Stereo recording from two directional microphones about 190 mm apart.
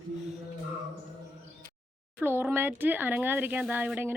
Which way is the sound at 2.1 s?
10° right (ahead or behind).